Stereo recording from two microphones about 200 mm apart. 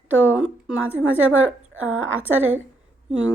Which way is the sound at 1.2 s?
90° right.